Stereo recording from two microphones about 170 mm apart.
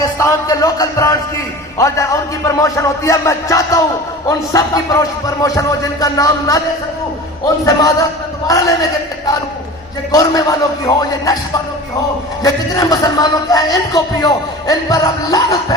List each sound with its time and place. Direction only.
0.0 s speech: 20° left (ahead or behind)
1.8 s music: 20° left (ahead or behind)
4.3 s speech: 20° left (ahead or behind)
7.6 s speech: 20° left (ahead or behind)
10.1 s speech: 20° left (ahead or behind)
12.4 s speech: 20° left (ahead or behind)